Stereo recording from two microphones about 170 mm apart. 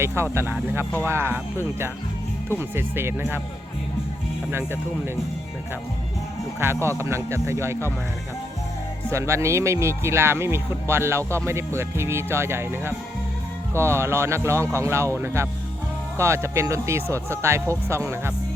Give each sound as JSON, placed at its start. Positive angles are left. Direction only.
{"t": 0.0, "sound": "speech", "side_deg": -15}
{"t": 2.6, "sound": "speech", "side_deg": -15}
{"t": 4.5, "sound": "speech", "side_deg": -15}
{"t": 7.0, "sound": "speech", "side_deg": -15}
{"t": 9.0, "sound": "speech", "side_deg": -15}